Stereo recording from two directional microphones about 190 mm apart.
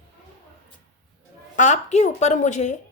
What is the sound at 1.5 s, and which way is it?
Speech, 40° left (ahead or behind).